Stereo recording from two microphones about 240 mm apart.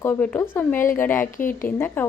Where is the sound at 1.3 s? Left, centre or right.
Left.